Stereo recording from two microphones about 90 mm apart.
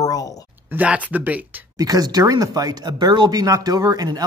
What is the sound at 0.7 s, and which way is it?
Speech, 15° right (ahead or behind).